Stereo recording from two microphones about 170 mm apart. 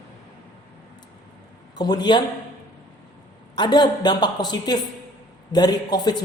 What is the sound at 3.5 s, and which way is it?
A man's voice, 25° left (ahead or behind).